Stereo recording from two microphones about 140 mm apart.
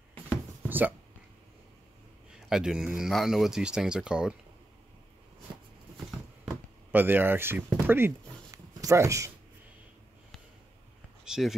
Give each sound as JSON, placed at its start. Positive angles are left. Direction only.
{"t": 0.7, "sound": "a sound", "side_deg": -15}
{"t": 2.3, "sound": "speech", "side_deg": -5}
{"t": 6.4, "sound": "chop", "side_deg": -10}
{"t": 7.8, "sound": "speech", "side_deg": -15}
{"t": 8.5, "sound": "a sound", "side_deg": -20}
{"t": 11.2, "sound": "speech", "side_deg": -5}